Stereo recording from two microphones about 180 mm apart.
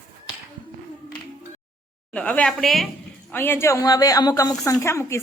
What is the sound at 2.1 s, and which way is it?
Speech, 5° left (ahead or behind).